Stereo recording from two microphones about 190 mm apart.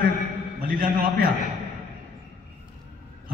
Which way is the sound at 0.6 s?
50° right (ahead or behind).